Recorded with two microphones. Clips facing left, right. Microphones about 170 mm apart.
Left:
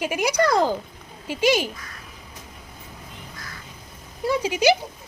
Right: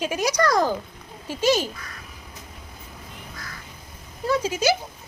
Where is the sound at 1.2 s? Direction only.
10° left (ahead or behind).